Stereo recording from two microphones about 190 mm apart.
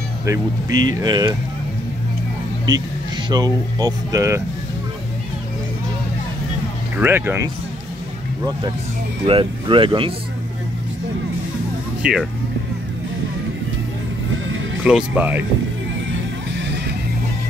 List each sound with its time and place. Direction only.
0.2 s speech: 20° right (ahead or behind)
3.3 s speech: 20° right (ahead or behind)
7.0 s speech: 10° right (ahead or behind)
9.2 s speech: 25° right (ahead or behind)
12.0 s speech: 5° right (ahead or behind)
14.9 s speech: 5° right (ahead or behind)